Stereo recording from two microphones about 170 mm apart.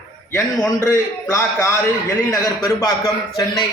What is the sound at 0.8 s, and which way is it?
A man's voice, 15° left (ahead or behind).